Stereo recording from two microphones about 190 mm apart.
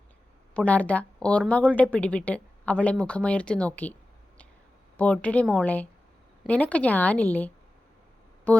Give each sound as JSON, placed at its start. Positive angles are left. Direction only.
{"t": 0.5, "sound": "a woman's voice", "side_deg": 5}
{"t": 4.9, "sound": "a woman's voice", "side_deg": 5}
{"t": 8.5, "sound": "a sound", "side_deg": 5}